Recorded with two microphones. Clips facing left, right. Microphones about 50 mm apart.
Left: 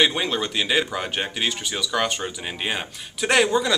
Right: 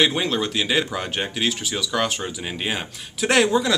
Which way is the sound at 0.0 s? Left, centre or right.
Centre.